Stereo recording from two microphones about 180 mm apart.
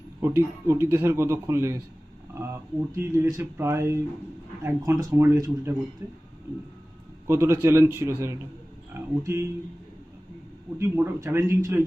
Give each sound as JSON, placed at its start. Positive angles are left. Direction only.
{"t": 0.2, "sound": "a man's voice", "side_deg": -15}
{"t": 7.3, "sound": "a man's voice", "side_deg": -15}
{"t": 10.8, "sound": "a man's voice", "side_deg": -15}